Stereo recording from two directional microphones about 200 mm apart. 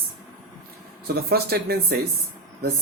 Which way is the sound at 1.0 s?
50° right (ahead or behind).